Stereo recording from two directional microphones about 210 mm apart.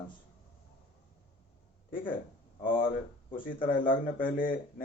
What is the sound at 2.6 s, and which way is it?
Speech, 40° left (ahead or behind).